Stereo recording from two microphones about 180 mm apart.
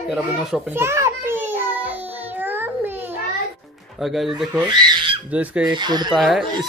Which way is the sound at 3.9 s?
Centre (ahead or behind).